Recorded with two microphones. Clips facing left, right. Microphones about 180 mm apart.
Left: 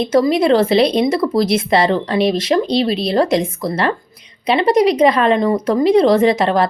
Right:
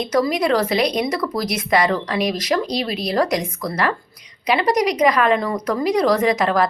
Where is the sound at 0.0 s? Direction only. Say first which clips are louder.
Left 5 dB; 25° left (ahead or behind).